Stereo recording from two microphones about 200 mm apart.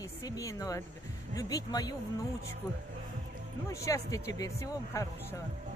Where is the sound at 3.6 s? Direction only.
15° left (ahead or behind).